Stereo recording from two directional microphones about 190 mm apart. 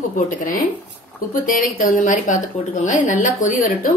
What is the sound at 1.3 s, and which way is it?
A woman's voice, 45° left (ahead or behind).